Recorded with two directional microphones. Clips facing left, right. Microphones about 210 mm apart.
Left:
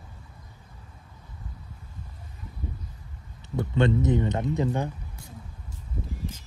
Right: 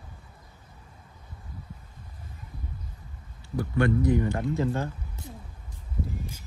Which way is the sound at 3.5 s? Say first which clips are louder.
Left 1 dB; 20° left (ahead or behind).